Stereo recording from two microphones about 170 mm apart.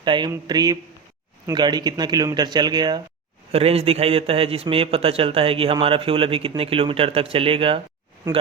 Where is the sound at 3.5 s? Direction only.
35° right (ahead or behind).